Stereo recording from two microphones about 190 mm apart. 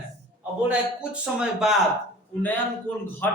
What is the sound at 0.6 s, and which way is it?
A man's voice, 5° right (ahead or behind).